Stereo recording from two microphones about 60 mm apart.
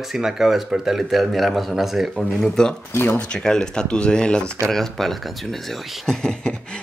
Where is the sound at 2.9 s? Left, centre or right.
Left.